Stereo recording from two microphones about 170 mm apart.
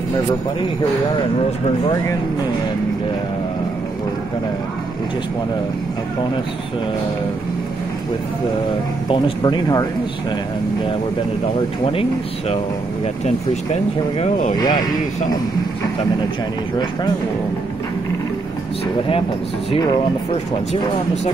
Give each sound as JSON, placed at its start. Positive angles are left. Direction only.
{"t": 9.1, "sound": "speech", "side_deg": 25}
{"t": 11.8, "sound": "speech", "side_deg": 30}
{"t": 14.6, "sound": "speech", "side_deg": 25}